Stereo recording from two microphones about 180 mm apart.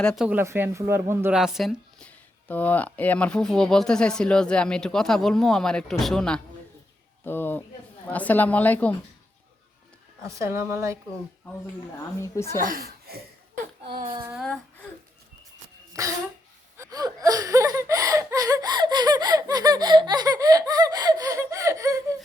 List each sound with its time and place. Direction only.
0.0 s speech: 5° left (ahead or behind)
0.3 s speech: 10° right (ahead or behind)
1.4 s a woman's voice: centre (ahead or behind)
10.2 s speech: 15° right (ahead or behind)
12.2 s a woman's voice: 15° left (ahead or behind)
12.5 s speech: 50° right (ahead or behind)
14.2 s speech: 5° right (ahead or behind)
15.9 s speech: 20° right (ahead or behind)